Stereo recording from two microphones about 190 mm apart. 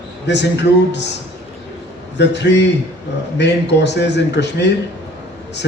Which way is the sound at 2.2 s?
65° left (ahead or behind).